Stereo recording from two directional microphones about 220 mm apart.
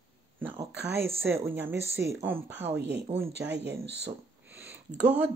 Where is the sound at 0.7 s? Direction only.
50° right (ahead or behind).